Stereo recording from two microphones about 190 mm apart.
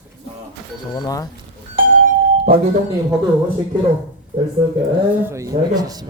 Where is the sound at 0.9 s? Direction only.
20° left (ahead or behind).